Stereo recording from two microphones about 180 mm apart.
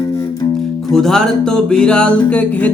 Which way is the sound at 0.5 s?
Centre (ahead or behind).